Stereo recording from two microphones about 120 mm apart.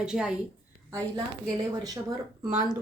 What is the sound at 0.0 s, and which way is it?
Speech, 5° right (ahead or behind).